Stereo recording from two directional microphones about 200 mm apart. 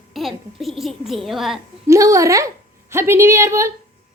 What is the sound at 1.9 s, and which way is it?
A woman's voice, 15° right (ahead or behind).